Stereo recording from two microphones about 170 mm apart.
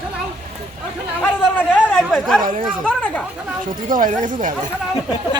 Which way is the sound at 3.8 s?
50° right (ahead or behind).